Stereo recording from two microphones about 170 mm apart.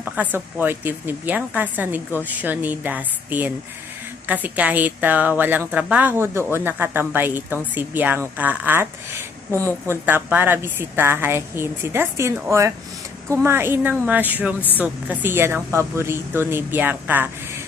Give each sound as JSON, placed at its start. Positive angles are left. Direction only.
{"t": 0.0, "sound": "a woman's voice", "side_deg": -10}